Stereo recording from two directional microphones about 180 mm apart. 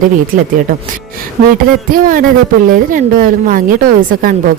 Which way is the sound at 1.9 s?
50° right (ahead or behind).